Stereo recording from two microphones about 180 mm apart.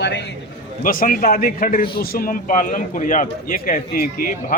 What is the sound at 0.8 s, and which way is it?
A man's voice, 50° left (ahead or behind).